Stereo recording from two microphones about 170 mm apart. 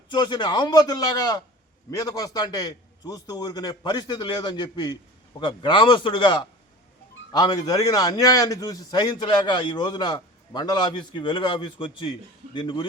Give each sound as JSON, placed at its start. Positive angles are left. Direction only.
{"t": 0.1, "sound": "a man's voice", "side_deg": 25}